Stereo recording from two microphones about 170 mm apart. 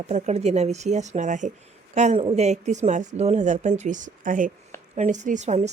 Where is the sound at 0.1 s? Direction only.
40° right (ahead or behind).